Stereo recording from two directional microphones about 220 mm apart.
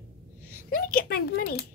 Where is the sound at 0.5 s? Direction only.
40° left (ahead or behind).